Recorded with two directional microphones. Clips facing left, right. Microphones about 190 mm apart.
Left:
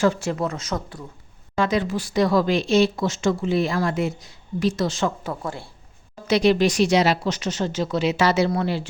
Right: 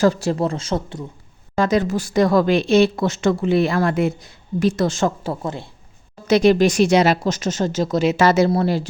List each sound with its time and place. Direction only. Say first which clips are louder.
0.0 s speech: right 4 dB; 35° right (ahead or behind)
1.5 s a woman's voice: right 4 dB; 40° right (ahead or behind)
5.2 s speech: right 4 dB; 25° right (ahead or behind)
6.2 s speech: right 4 dB; 45° right (ahead or behind)